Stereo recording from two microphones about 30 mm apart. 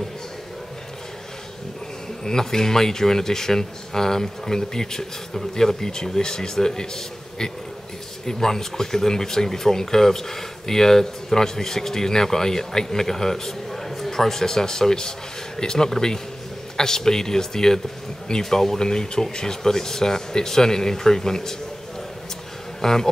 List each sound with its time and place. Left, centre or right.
2.2 s speech: centre
8.3 s speech: centre
22.8 s speech: centre